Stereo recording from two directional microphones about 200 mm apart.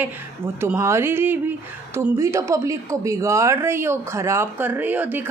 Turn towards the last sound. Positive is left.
turn(degrees=-10)  # may be behind; listen again after turning